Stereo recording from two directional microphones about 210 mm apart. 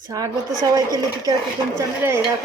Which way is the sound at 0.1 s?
20° right (ahead or behind).